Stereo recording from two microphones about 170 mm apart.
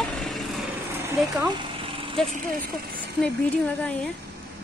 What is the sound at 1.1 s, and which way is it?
Speech, 10° right (ahead or behind).